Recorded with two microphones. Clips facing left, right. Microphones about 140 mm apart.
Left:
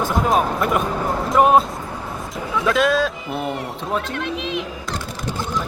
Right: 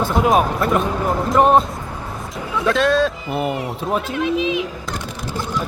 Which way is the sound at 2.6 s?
Centre (ahead or behind).